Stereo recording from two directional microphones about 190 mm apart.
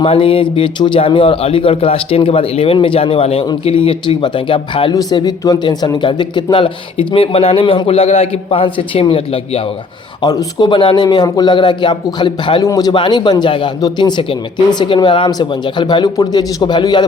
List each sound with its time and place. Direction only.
0.0 s a man's voice: 30° left (ahead or behind)